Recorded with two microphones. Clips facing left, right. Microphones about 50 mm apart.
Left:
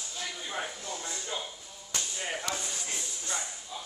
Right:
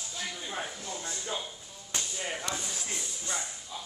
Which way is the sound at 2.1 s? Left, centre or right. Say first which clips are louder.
Left 1 dB; centre.